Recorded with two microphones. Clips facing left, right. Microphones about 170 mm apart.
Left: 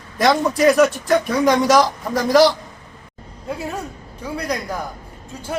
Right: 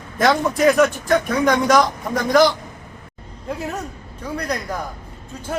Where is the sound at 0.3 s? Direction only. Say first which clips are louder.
Left 1 dB; 5° left (ahead or behind).